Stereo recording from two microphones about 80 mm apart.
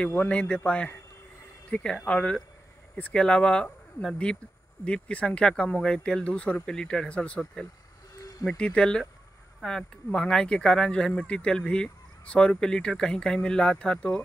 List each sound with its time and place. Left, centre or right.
0.1 s speech: centre